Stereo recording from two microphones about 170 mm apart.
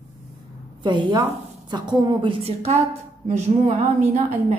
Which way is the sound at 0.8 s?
25° right (ahead or behind).